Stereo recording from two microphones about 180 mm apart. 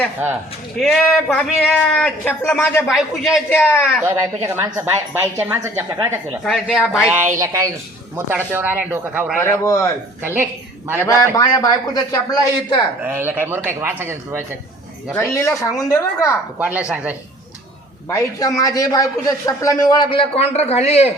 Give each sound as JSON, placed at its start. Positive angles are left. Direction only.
{"t": 0.8, "sound": "a man's voice", "side_deg": 5}
{"t": 2.8, "sound": "a man's voice", "side_deg": 0}
{"t": 3.5, "sound": "speech", "side_deg": 10}
{"t": 4.0, "sound": "a man's voice", "side_deg": -15}
{"t": 7.3, "sound": "speech", "side_deg": -15}
{"t": 9.4, "sound": "speech", "side_deg": 15}
{"t": 10.2, "sound": "a woman's voice", "side_deg": -10}
{"t": 11.0, "sound": "a man's voice", "side_deg": 15}
{"t": 13.0, "sound": "speech", "side_deg": -10}
{"t": 15.1, "sound": "speech", "side_deg": 15}
{"t": 16.6, "sound": "speech", "side_deg": -10}
{"t": 18.1, "sound": "a man's voice", "side_deg": 20}